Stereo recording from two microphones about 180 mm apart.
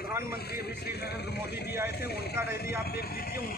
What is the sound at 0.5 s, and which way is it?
Speech, 65° left (ahead or behind).